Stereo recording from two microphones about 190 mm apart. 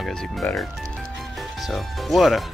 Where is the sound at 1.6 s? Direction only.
Centre (ahead or behind).